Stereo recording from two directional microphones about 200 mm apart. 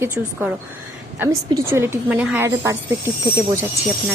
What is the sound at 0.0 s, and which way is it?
A woman's voice, 5° right (ahead or behind).